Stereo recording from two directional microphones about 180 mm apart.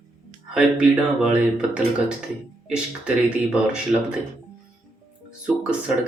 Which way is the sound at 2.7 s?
5° right (ahead or behind).